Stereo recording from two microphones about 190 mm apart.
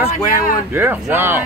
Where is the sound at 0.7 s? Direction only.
10° right (ahead or behind).